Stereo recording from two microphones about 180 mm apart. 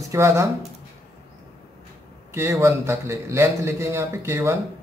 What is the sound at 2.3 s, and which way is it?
A man's voice, 15° right (ahead or behind).